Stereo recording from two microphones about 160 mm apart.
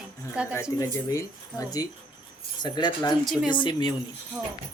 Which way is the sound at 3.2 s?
Centre (ahead or behind).